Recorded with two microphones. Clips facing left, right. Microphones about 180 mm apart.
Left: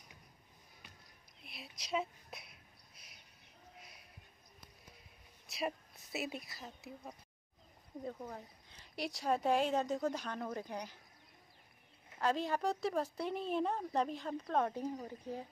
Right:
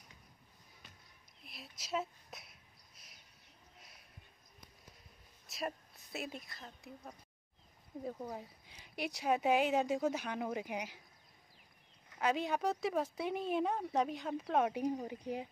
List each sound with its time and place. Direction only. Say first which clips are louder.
1.4 s whispering: left 1 dB; centre (ahead or behind)
5.7 s a woman's voice: left 2 dB; 5° left (ahead or behind)
8.0 s speech: right 2 dB; 10° right (ahead or behind)
12.2 s speech: even; centre (ahead or behind)